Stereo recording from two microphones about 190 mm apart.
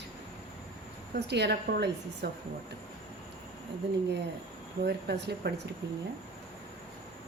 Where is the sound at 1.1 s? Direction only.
60° right (ahead or behind).